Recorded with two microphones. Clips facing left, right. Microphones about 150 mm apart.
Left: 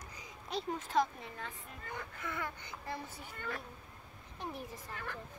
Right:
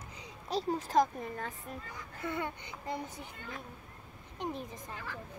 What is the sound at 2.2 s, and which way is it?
Speech, 30° right (ahead or behind).